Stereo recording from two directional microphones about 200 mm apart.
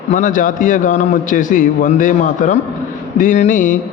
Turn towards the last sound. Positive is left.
turn(degrees=40)  # may be behind; listen again after turning